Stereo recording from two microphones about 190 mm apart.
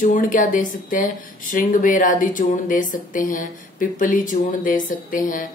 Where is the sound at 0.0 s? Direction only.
45° left (ahead or behind).